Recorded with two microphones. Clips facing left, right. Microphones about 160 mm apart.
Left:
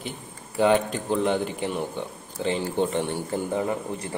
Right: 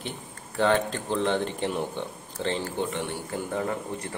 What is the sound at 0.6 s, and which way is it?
Speech, 10° left (ahead or behind).